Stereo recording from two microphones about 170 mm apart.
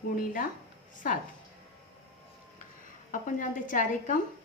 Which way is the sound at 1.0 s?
60° left (ahead or behind).